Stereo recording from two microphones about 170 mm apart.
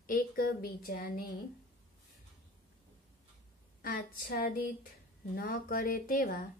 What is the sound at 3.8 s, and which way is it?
Speech, 55° left (ahead or behind).